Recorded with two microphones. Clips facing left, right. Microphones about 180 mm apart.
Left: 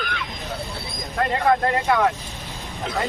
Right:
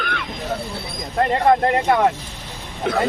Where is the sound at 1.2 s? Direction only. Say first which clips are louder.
Right 4 dB; 30° right (ahead or behind).